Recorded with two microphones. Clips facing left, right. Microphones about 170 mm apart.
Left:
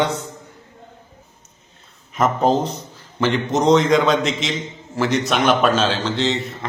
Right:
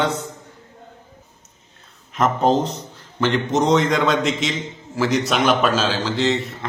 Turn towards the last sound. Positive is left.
turn(degrees=0)  # may be behind; listen again after turning